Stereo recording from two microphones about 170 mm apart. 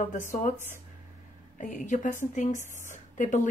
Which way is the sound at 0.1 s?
50° left (ahead or behind).